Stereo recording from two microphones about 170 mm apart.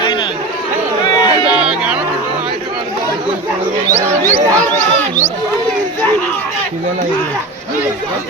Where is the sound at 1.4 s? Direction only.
5° right (ahead or behind).